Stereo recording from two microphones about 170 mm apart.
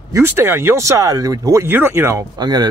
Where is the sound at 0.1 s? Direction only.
15° right (ahead or behind).